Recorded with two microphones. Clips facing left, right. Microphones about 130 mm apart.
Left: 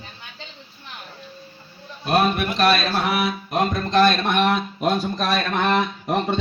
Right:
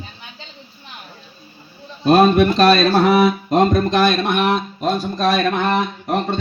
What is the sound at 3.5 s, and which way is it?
Speech, 25° right (ahead or behind).